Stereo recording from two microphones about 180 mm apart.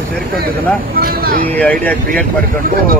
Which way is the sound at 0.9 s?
55° right (ahead or behind).